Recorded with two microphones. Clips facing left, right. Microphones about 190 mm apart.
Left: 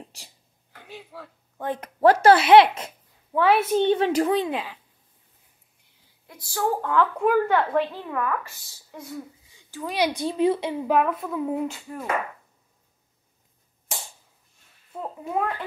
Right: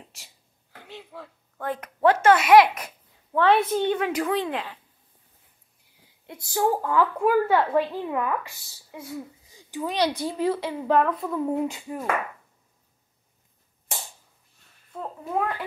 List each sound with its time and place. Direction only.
0.1 s speech: 35° left (ahead or behind)
0.8 s a sound: 10° left (ahead or behind)
1.6 s a woman's voice: 20° left (ahead or behind)
2.0 s speech: 40° left (ahead or behind)
3.3 s a woman's voice: 10° left (ahead or behind)
3.7 s a woman's voice: 25° left (ahead or behind)
6.2 s a woman's voice: 20° right (ahead or behind)
6.8 s speech: 5° right (ahead or behind)
8.9 s speech: 5° right (ahead or behind)
9.8 s a woman's voice: 10° left (ahead or behind)
10.9 s speech: 10° left (ahead or behind)
11.6 s speech: 10° right (ahead or behind)
14.9 s a child's voice: 5° left (ahead or behind)